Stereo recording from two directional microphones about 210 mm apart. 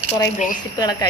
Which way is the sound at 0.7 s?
20° left (ahead or behind).